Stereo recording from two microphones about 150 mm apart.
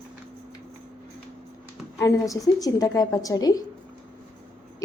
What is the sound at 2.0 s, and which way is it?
A woman's voice, 20° left (ahead or behind).